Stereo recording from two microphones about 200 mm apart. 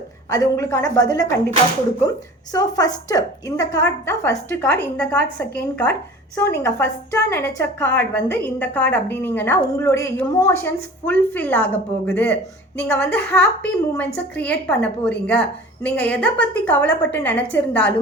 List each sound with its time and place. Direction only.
0.3 s speech: 15° left (ahead or behind)